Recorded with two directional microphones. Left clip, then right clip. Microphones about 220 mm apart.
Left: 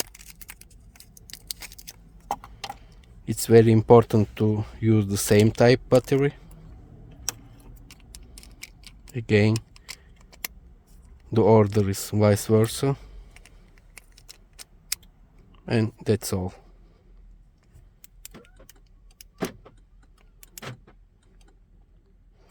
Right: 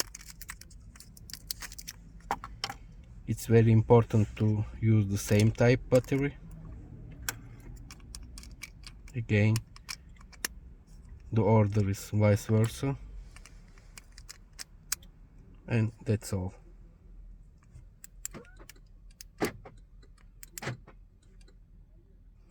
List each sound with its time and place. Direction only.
1.8 s keys jangling: 10° left (ahead or behind)
2.9 s speech: 55° left (ahead or behind)
8.4 s a sound: 10° left (ahead or behind)
9.1 s speech: 60° left (ahead or behind)
9.7 s a sound: 10° left (ahead or behind)
11.3 s speech: 55° left (ahead or behind)
15.6 s speech: 55° left (ahead or behind)